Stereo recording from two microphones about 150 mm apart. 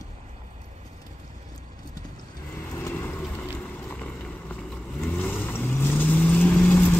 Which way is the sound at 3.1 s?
5° left (ahead or behind).